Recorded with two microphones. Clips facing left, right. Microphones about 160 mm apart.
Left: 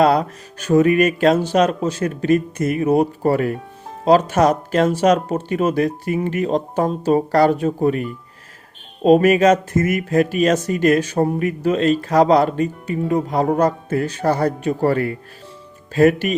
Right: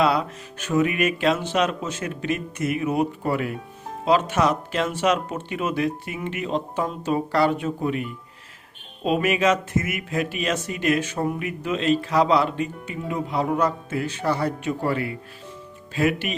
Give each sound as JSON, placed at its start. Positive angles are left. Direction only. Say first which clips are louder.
{"t": 0.0, "sound": "speech", "louder": "left 6 dB", "side_deg": 40}